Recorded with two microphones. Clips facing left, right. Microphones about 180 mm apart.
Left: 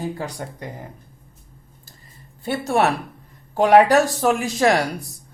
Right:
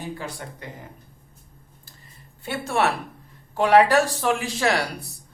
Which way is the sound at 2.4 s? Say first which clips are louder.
Left 4 dB; 40° left (ahead or behind).